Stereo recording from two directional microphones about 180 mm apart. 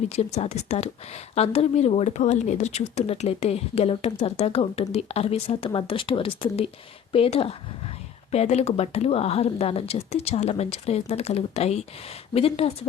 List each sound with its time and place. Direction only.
0.1 s speech: 35° left (ahead or behind)